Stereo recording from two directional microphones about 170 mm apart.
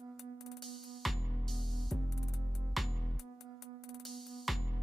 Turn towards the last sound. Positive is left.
turn(degrees=0)  # may be behind; listen again after turning